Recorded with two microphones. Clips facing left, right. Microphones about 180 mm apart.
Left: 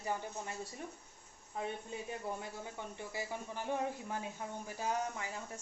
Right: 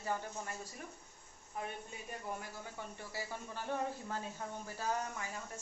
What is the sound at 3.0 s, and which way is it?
A woman's voice, 15° left (ahead or behind).